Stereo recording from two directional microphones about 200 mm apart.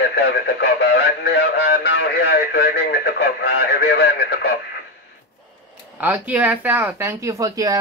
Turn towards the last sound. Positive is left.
turn(degrees=-15)  # may be behind; listen again after turning